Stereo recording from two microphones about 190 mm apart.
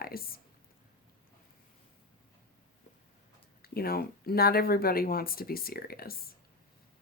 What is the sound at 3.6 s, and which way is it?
Speech, 55° left (ahead or behind).